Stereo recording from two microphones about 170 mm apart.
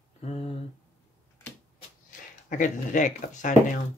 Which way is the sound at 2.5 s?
45° left (ahead or behind).